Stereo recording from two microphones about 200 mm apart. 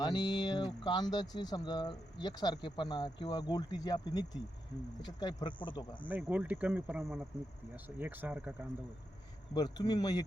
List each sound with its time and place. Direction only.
0.0 s speech: 20° left (ahead or behind)
6.1 s speech: 10° right (ahead or behind)
9.6 s speech: 20° left (ahead or behind)